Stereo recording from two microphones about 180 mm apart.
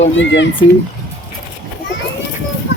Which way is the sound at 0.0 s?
90° left.